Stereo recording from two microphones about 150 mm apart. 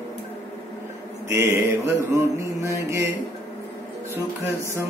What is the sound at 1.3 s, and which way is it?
Mantra, 20° right (ahead or behind).